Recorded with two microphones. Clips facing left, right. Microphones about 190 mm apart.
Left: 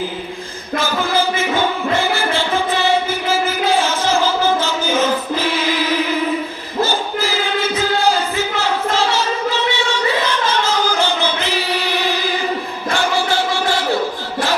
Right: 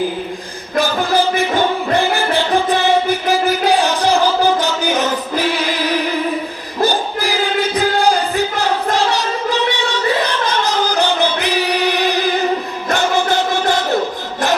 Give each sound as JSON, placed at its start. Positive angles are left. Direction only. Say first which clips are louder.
{"t": 0.8, "sound": "music", "louder": "right 3 dB", "side_deg": -15}
{"t": 3.7, "sound": "music", "louder": "right 2 dB", "side_deg": -15}
{"t": 6.8, "sound": "music", "louder": "right 5 dB", "side_deg": -15}
{"t": 10.4, "sound": "choir", "louder": "right 1 dB", "side_deg": -15}
{"t": 13.0, "sound": "music", "louder": "right 2 dB", "side_deg": -20}